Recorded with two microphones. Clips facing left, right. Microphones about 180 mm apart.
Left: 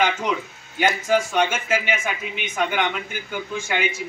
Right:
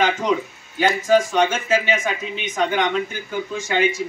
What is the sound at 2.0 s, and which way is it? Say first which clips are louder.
A man's voice: right 3 dB; 30° right (ahead or behind).